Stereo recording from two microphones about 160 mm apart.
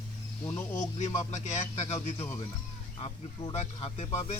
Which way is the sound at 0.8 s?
50° left (ahead or behind).